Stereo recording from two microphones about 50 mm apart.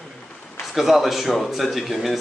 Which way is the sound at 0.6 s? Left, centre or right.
Centre.